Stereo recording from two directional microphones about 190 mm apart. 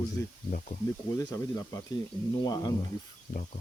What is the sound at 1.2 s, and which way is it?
Speech, 20° left (ahead or behind).